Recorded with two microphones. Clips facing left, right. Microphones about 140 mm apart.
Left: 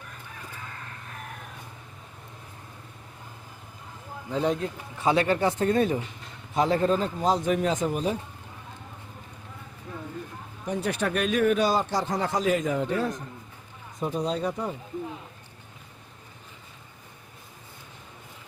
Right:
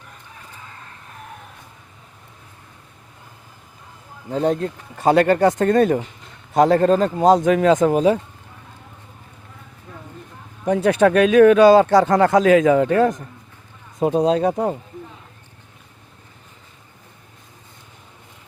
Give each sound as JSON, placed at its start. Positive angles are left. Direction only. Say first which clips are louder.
{"t": 4.3, "sound": "speech", "louder": "right 6 dB", "side_deg": -45}
{"t": 4.9, "sound": "speech", "louder": "right 8 dB", "side_deg": -65}
{"t": 7.4, "sound": "speech", "louder": "right 10 dB", "side_deg": -90}
{"t": 10.8, "sound": "speech", "louder": "right 13 dB", "side_deg": -90}
{"t": 14.5, "sound": "speech", "louder": "right 10 dB", "side_deg": -60}